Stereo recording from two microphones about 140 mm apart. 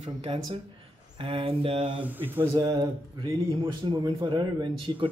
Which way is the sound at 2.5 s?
30° right (ahead or behind).